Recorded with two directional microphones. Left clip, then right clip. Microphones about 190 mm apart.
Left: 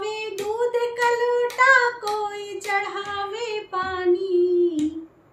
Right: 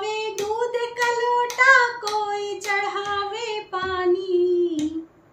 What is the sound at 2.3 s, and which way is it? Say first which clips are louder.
Female singing: right 1 dB; 5° left (ahead or behind).